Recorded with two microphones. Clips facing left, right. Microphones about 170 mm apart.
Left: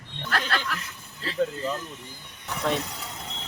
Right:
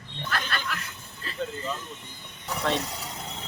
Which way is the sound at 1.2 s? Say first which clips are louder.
Left 6 dB; 80° left.